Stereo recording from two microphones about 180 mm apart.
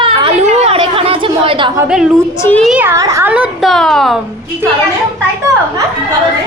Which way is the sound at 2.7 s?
10° right (ahead or behind).